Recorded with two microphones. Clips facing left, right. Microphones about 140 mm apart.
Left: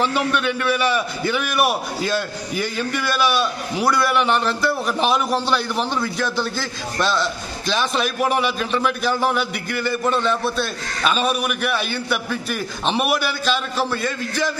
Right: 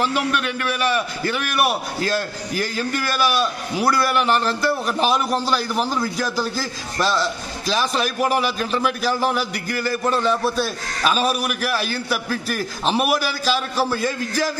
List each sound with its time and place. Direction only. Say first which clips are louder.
0.0 s a man's voice: left 1 dB; centre (ahead or behind)